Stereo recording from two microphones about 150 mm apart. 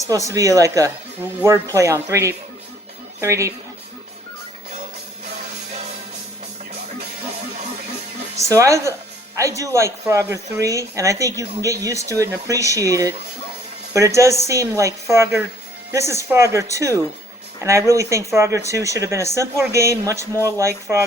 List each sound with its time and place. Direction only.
0.1 s speech: 20° right (ahead or behind)
8.4 s speech: 20° right (ahead or behind)